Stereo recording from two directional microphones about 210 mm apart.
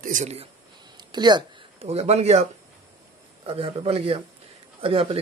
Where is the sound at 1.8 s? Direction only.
30° right (ahead or behind).